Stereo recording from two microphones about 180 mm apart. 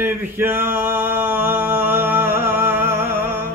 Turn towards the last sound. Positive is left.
turn(degrees=-15)  # may be behind; listen again after turning